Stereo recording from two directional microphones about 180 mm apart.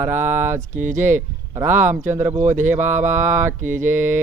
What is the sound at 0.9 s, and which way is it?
Speech, 45° right (ahead or behind).